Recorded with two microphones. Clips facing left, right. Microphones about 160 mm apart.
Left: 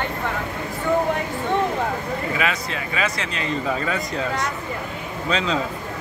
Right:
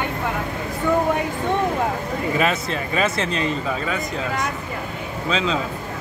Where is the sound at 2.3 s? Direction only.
35° right (ahead or behind).